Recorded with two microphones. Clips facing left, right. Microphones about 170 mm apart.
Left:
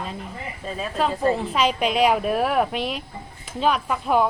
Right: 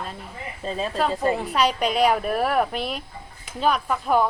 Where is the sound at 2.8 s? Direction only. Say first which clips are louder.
Left 2 dB; 40° right (ahead or behind).